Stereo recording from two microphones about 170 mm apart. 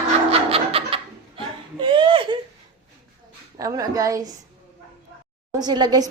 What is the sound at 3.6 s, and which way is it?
Speech, 20° right (ahead or behind).